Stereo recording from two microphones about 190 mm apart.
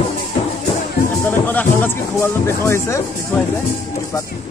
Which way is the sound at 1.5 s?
10° left (ahead or behind).